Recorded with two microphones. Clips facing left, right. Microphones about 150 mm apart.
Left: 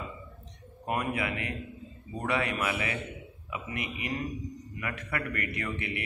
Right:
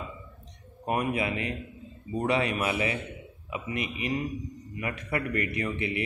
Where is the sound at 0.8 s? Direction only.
25° right (ahead or behind).